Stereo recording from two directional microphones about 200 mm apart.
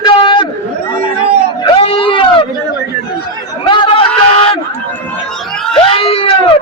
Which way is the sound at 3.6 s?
25° left (ahead or behind).